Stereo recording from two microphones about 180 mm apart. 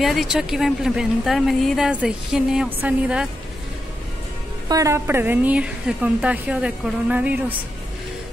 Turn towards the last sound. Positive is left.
turn(degrees=-10)  # may be behind; listen again after turning